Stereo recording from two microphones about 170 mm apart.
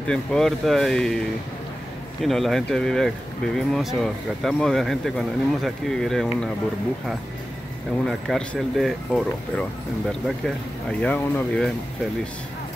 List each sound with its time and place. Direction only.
0.0 s speech: 5° left (ahead or behind)
2.2 s speech: centre (ahead or behind)
8.0 s speech: 5° left (ahead or behind)